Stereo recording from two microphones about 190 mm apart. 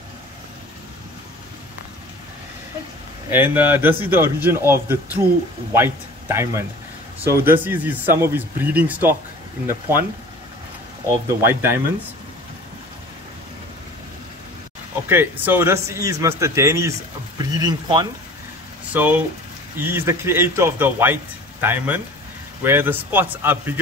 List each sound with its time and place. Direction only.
3.3 s speech: 10° right (ahead or behind)
11.1 s speech: 15° right (ahead or behind)
15.0 s speech: 10° right (ahead or behind)
18.9 s speech: 10° right (ahead or behind)